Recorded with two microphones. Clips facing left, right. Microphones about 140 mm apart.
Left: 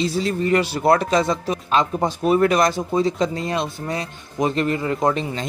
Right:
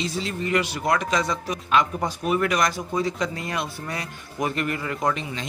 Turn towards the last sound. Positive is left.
turn(degrees=35)  # may be behind; listen again after turning